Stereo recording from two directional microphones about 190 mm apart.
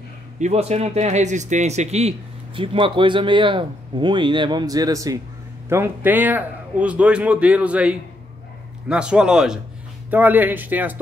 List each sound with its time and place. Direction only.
0.4 s a man's voice: 35° right (ahead or behind); by 11.0 s 10° right (ahead or behind)